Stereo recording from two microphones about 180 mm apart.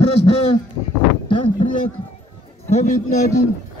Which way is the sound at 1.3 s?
30° left (ahead or behind).